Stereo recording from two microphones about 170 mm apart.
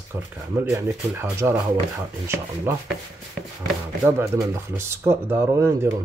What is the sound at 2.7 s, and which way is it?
Speech, 15° right (ahead or behind).